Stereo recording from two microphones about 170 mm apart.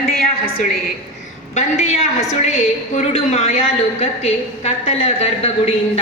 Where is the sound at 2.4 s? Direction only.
45° left (ahead or behind).